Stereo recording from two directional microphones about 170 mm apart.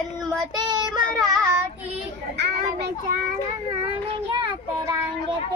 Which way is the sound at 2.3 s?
80° right.